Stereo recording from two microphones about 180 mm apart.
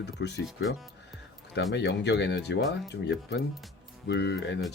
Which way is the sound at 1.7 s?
75° left (ahead or behind).